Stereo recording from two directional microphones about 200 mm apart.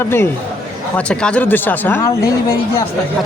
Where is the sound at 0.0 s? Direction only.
10° left (ahead or behind).